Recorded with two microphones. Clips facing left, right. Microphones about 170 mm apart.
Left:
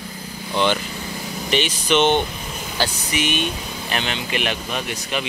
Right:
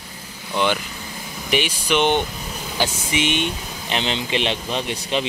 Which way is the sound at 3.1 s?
25° right (ahead or behind).